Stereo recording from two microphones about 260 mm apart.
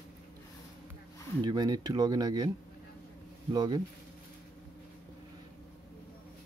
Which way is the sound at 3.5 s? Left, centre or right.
Centre.